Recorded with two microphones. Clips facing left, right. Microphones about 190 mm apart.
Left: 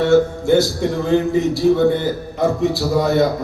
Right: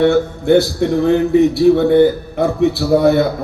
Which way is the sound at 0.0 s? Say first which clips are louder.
Right 1 dB; 60° right (ahead or behind).